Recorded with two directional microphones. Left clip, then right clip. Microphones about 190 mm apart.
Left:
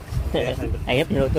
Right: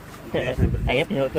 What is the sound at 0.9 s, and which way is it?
Speech, 20° left (ahead or behind).